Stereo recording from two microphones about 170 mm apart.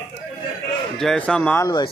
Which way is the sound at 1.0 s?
5° left (ahead or behind).